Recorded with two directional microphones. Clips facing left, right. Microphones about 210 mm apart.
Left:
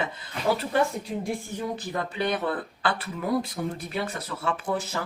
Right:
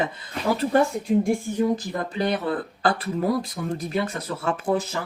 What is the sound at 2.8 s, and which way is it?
Speech, 40° right (ahead or behind).